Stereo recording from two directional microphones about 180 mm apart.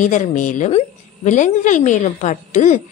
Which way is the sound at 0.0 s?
45° left (ahead or behind).